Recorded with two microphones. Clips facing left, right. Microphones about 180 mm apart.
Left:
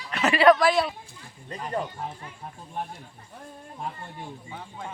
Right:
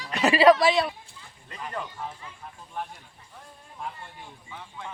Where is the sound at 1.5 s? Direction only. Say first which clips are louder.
Left 5 dB; 35° left (ahead or behind).